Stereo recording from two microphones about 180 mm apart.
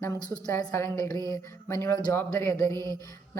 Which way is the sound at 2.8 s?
20° right (ahead or behind).